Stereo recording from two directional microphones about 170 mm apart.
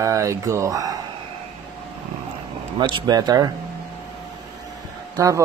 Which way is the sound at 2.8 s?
25° right (ahead or behind).